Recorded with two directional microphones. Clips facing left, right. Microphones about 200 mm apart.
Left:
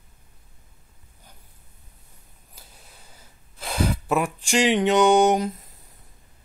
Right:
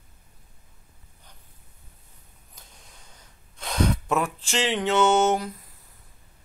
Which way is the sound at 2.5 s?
5° left (ahead or behind).